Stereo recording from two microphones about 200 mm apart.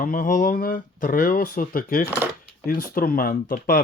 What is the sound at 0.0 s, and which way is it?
Speech, 45° left (ahead or behind).